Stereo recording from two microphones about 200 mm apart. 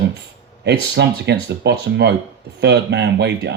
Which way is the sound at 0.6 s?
60° right (ahead or behind).